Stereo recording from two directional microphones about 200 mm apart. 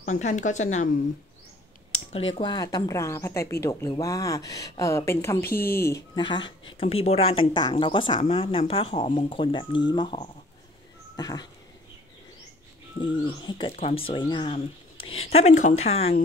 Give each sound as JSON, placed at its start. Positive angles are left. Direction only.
{"t": 0.0, "sound": "speech", "side_deg": 35}
{"t": 2.1, "sound": "speech", "side_deg": 30}
{"t": 6.1, "sound": "speech", "side_deg": 25}
{"t": 13.0, "sound": "speech", "side_deg": 25}